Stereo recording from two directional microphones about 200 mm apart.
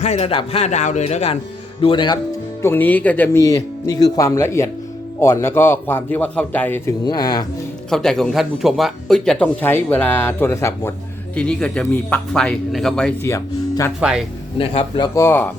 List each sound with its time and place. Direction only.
0.0 s a man's voice: 30° left (ahead or behind)
2.6 s speech: 10° left (ahead or behind)
7.0 s a man's voice: 20° left (ahead or behind)
7.9 s speech: centre (ahead or behind)
14.6 s a man's voice: 25° left (ahead or behind); by 15.4 s 10° left (ahead or behind)